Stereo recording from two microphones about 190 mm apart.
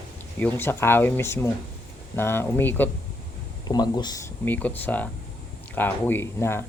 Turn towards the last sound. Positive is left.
turn(degrees=15)  # may be behind; listen again after turning